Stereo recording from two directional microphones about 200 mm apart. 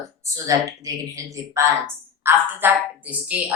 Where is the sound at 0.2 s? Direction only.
15° right (ahead or behind).